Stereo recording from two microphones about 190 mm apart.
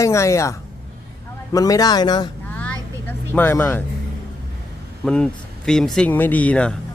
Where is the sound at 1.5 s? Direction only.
20° left (ahead or behind).